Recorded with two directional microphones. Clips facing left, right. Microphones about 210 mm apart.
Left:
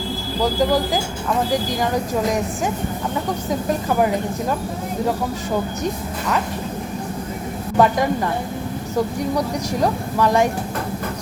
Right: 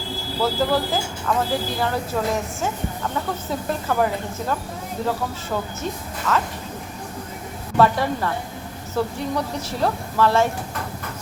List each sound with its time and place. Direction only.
0.4 s speech: 15° left (ahead or behind)
5.8 s a woman's voice: 15° left (ahead or behind)
7.8 s speech: 15° left (ahead or behind)